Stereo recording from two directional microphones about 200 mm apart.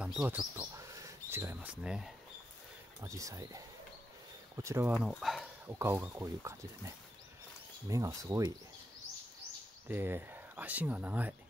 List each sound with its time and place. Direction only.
0.0 s speech: 10° right (ahead or behind)
0.7 s mouse: 15° right (ahead or behind)
3.0 s speech: 15° right (ahead or behind)
5.2 s speech: centre (ahead or behind)
5.7 s speech: 10° right (ahead or behind)
7.9 s speech: 15° right (ahead or behind)
9.8 s speech: 10° right (ahead or behind)